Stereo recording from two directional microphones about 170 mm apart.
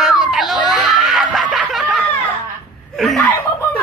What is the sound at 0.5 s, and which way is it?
Speech, 25° left (ahead or behind).